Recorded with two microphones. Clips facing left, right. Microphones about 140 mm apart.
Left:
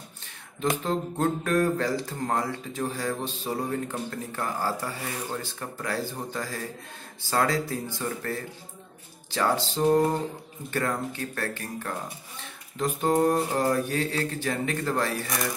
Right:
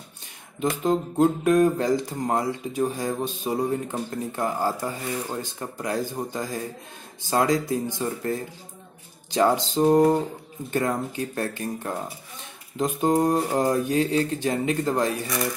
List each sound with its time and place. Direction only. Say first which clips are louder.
0.6 s speech: right 4 dB; 15° right (ahead or behind)